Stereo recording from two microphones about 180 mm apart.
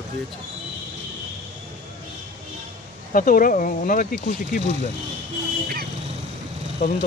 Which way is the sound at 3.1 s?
50° left (ahead or behind).